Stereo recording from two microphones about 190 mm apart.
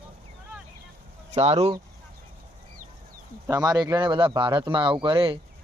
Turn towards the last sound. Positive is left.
turn(degrees=-25)  # may be behind; listen again after turning